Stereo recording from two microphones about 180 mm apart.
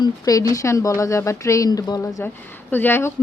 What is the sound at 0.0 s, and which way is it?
Speech, 20° left (ahead or behind).